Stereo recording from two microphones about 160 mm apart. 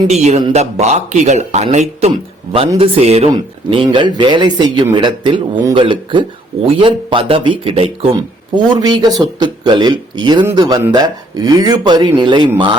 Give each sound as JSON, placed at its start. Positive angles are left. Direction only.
{"t": 0.1, "sound": "a man's voice", "side_deg": -45}